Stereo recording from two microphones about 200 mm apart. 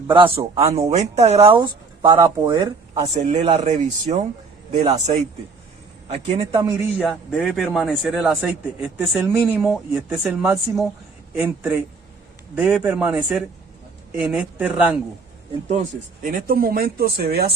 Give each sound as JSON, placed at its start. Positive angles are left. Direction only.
{"t": 0.1, "sound": "speech", "side_deg": -25}
{"t": 6.1, "sound": "speech", "side_deg": -30}
{"t": 6.5, "sound": "speech", "side_deg": -15}
{"t": 7.1, "sound": "a man's voice", "side_deg": -5}
{"t": 12.8, "sound": "a man's voice", "side_deg": -5}
{"t": 16.2, "sound": "speech", "side_deg": -45}